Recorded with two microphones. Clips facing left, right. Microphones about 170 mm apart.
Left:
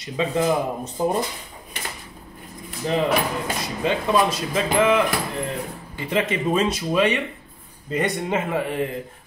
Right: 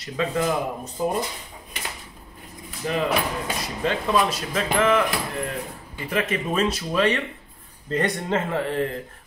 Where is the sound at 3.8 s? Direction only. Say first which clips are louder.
Left 2 dB; 15° left (ahead or behind).